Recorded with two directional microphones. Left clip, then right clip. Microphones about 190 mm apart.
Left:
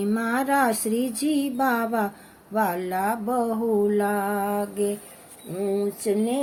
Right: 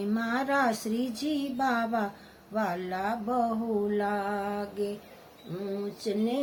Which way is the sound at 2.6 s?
15° left (ahead or behind).